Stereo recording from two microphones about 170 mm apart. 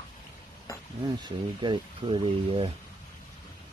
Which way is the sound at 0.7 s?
20° left (ahead or behind).